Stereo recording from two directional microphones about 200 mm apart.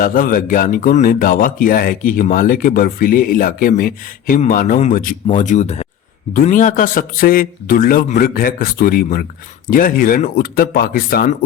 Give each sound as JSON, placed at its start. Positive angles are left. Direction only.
{"t": 0.0, "sound": "speech", "side_deg": 45}